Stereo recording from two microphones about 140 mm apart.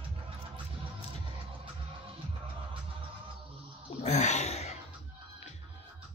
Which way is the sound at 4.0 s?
55° left (ahead or behind).